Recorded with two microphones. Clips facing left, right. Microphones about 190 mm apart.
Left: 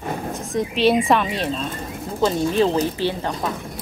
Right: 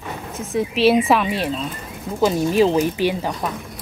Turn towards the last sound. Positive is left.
turn(degrees=-15)  # may be behind; listen again after turning